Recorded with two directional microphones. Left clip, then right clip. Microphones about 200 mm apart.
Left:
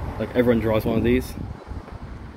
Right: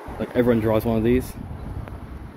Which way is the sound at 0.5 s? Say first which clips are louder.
Right 1 dB; 15° right (ahead or behind).